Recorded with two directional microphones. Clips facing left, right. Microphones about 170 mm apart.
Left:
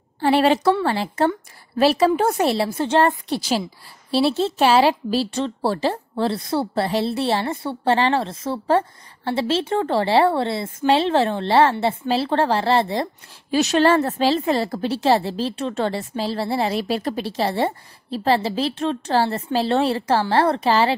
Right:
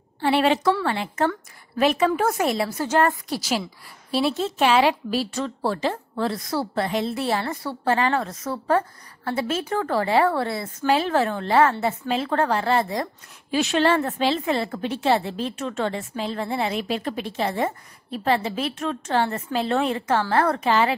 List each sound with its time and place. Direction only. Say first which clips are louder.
0.2 s a woman's voice: left 3 dB; 40° left (ahead or behind)